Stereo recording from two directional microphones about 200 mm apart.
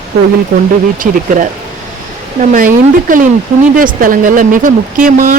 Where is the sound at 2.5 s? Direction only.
40° right (ahead or behind).